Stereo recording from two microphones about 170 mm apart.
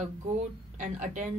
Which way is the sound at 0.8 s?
45° right (ahead or behind).